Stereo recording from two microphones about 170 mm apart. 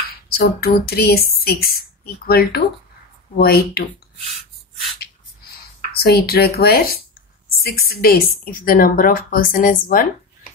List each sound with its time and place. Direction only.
0.3 s speech: 65° left (ahead or behind)
4.3 s a sound: centre (ahead or behind)
6.0 s speech: 65° left (ahead or behind)